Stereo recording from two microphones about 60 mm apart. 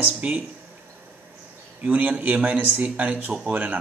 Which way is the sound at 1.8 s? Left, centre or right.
Right.